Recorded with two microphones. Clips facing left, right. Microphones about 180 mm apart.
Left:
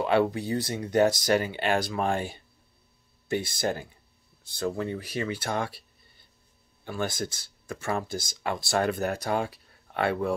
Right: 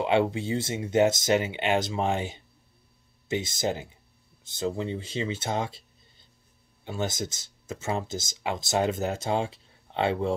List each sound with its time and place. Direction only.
0.0 s speech: 20° right (ahead or behind)